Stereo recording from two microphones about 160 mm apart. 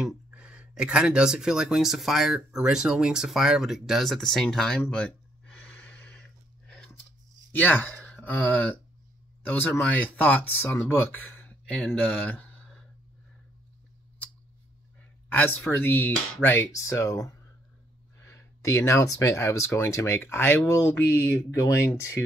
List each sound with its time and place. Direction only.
0.0 s speech: 5° right (ahead or behind); by 6.2 s 10° left (ahead or behind)
7.5 s speech: 10° left (ahead or behind)
15.2 s speech: 10° left (ahead or behind)